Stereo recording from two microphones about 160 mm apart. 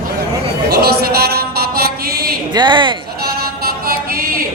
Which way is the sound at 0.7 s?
80° right.